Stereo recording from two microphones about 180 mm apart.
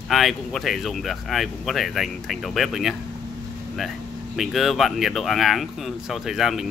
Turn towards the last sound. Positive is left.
turn(degrees=0)  # may be behind; listen again after turning